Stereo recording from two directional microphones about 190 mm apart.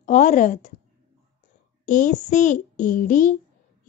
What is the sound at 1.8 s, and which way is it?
A child's voice, 40° left (ahead or behind).